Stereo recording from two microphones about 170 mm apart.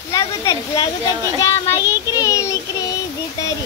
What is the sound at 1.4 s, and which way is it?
Child singing, 20° left (ahead or behind).